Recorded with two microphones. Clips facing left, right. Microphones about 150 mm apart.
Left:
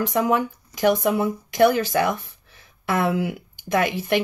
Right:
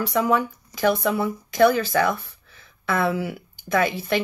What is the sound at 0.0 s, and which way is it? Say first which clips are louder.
Speech: even; 15° left (ahead or behind).